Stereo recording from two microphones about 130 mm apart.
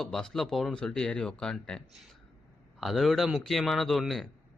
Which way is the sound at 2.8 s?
Centre (ahead or behind).